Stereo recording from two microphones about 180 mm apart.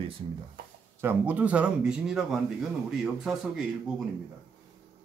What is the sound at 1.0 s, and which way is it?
A man's voice, 10° right (ahead or behind).